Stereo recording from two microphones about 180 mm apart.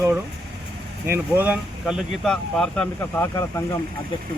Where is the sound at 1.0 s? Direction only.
10° right (ahead or behind).